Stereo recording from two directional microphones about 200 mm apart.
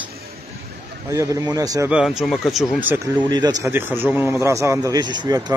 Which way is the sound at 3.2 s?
20° right (ahead or behind).